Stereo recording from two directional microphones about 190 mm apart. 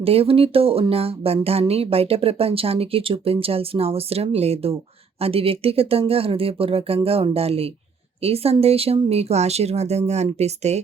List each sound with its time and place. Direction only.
0.0 s speech: 30° right (ahead or behind)